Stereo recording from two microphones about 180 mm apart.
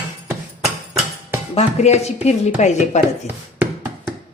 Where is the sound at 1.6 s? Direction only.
40° left (ahead or behind).